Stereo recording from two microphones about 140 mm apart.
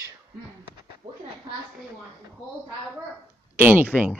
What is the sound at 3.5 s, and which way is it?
Speech, 15° right (ahead or behind).